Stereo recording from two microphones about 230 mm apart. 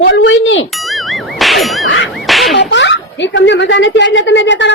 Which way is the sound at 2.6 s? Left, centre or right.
Left.